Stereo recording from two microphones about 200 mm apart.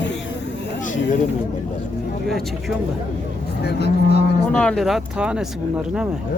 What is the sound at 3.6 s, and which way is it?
Speech, 55° left (ahead or behind).